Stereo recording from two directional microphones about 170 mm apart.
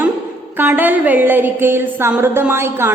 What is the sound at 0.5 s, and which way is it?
A woman's voice, 15° right (ahead or behind).